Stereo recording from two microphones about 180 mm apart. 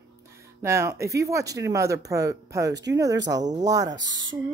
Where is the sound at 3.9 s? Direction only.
90° right.